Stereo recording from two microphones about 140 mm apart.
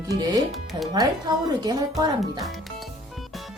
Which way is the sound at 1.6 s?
30° right (ahead or behind).